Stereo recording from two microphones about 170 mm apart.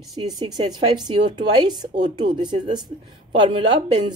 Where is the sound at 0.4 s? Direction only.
25° right (ahead or behind).